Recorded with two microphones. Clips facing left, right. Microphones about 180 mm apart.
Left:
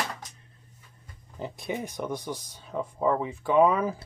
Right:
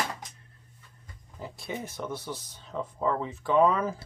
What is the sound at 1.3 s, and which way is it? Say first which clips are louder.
Speech: left 4 dB; 20° left (ahead or behind).